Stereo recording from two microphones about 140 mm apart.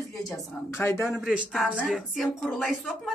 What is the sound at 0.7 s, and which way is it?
Speech, 15° left (ahead or behind).